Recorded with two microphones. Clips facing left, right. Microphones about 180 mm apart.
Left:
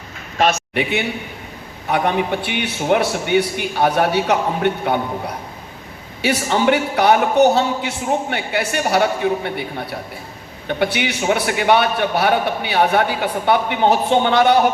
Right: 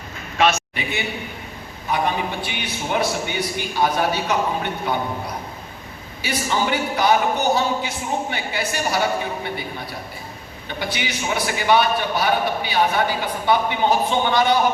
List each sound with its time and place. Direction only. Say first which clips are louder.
0.7 s a man's voice: left 7 dB; 65° left (ahead or behind)
6.2 s a man's voice: left 6 dB; 65° left (ahead or behind)